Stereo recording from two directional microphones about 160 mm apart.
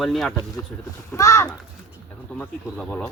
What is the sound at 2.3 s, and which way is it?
Speech, 10° left (ahead or behind).